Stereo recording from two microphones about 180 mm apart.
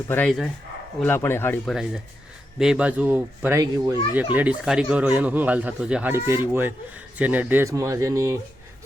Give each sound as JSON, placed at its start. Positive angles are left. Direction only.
{"t": 0.1, "sound": "speech", "side_deg": 5}
{"t": 1.7, "sound": "speech", "side_deg": -5}